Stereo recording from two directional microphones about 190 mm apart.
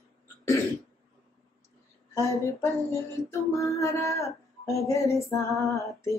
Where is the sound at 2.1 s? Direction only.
15° left (ahead or behind).